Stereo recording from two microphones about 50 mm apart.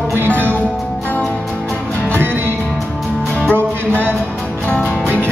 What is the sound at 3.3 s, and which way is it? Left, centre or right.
Music, left.